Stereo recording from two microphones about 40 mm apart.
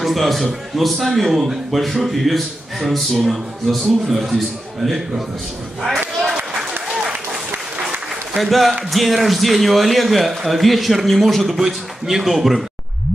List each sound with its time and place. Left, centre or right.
0.0 s a man's voice: centre
5.9 s battle cry: right
8.4 s speech: centre